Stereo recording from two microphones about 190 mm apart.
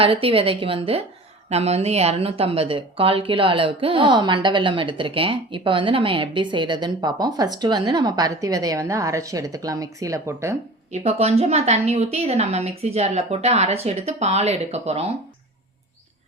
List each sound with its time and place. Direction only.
0.0 s speech: 30° right (ahead or behind)
10.9 s a woman's voice: 35° right (ahead or behind)